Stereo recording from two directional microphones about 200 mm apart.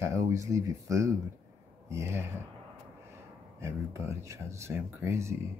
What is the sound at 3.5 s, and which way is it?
Speech, 15° right (ahead or behind).